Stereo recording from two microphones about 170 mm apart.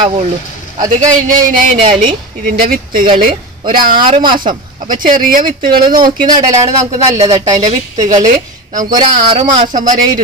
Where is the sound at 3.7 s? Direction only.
55° right (ahead or behind).